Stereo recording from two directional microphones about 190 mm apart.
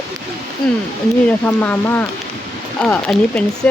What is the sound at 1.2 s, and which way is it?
Speech, 10° left (ahead or behind).